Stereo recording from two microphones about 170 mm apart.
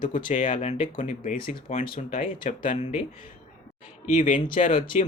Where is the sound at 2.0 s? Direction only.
45° left (ahead or behind).